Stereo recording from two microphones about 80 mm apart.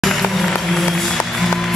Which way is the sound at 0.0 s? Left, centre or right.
Centre.